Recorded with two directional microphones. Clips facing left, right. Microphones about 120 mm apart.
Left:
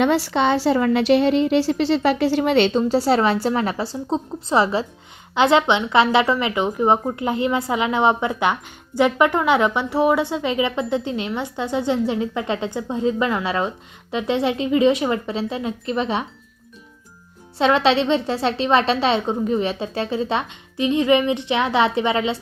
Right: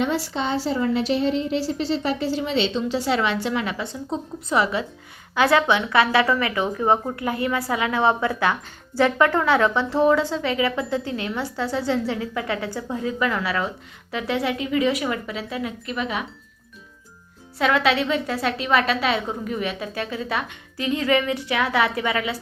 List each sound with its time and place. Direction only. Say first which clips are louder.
0.0 s a woman's voice: left 6 dB; 70° left (ahead or behind); by 16.2 s 30° left (ahead or behind)
17.6 s a woman's voice: left 3 dB; 25° left (ahead or behind)